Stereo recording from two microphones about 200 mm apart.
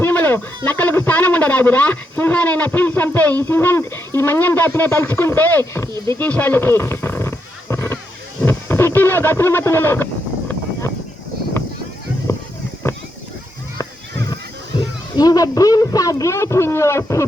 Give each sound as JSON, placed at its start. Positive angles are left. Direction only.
{"t": 0.0, "sound": "speech", "side_deg": 10}
{"t": 8.4, "sound": "a sound", "side_deg": 10}
{"t": 14.8, "sound": "speech", "side_deg": 20}